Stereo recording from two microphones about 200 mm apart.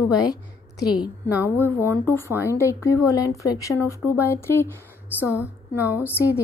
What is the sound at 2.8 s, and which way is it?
Speech, 15° left (ahead or behind).